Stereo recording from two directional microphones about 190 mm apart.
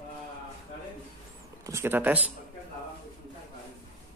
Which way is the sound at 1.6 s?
15° right (ahead or behind).